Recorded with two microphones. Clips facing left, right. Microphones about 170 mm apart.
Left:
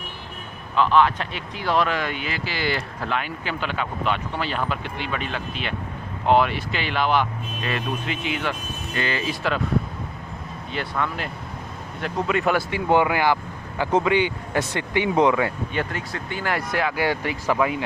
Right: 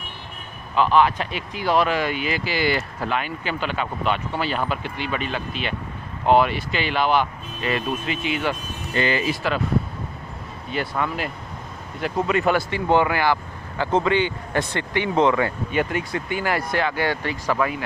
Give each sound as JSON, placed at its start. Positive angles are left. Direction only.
{"t": 0.7, "sound": "speech", "side_deg": -10}
{"t": 8.9, "sound": "speech", "side_deg": -20}
{"t": 9.4, "sound": "speech", "side_deg": -5}
{"t": 10.7, "sound": "speech", "side_deg": -5}
{"t": 15.7, "sound": "speech", "side_deg": -15}